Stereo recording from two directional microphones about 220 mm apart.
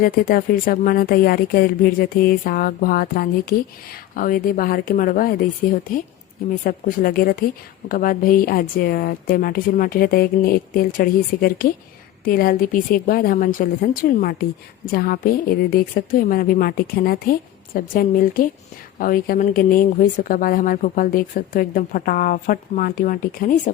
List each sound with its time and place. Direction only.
0.0 s a woman's voice: 40° left (ahead or behind)